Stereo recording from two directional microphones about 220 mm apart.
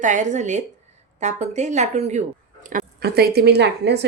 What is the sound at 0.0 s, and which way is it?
A woman's voice, 35° right (ahead or behind).